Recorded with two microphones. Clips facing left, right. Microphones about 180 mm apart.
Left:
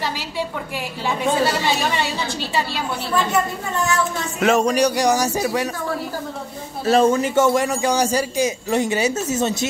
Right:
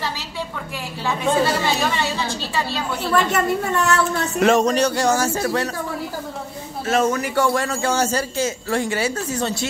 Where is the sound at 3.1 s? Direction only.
65° right (ahead or behind).